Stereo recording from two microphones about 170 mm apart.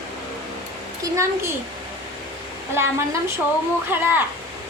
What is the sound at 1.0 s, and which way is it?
Speech, 15° right (ahead or behind).